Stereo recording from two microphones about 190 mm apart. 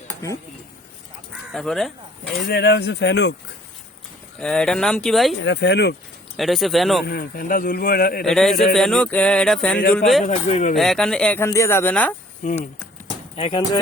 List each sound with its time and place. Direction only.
1.5 s speech: centre (ahead or behind)
2.5 s speech: 60° left (ahead or behind)
4.4 s speech: 5° left (ahead or behind)
5.4 s speech: 70° left (ahead or behind)
6.3 s speech: centre (ahead or behind)
7.0 s speech: 55° left (ahead or behind)
8.2 s speech: centre (ahead or behind)
10.2 s speech: 40° left (ahead or behind)
10.8 s speech: centre (ahead or behind)
13.3 s speech: 30° left (ahead or behind)